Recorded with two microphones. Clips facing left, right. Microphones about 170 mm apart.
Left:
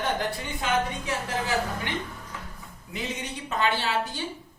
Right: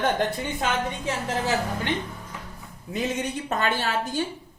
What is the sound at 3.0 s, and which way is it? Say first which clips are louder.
A woman's voice: right 7 dB; 45° right (ahead or behind).